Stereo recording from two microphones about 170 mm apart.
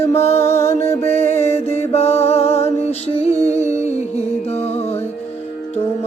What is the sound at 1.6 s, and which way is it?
Music, 40° left (ahead or behind).